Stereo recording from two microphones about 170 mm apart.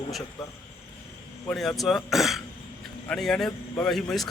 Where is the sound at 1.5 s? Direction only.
Centre (ahead or behind).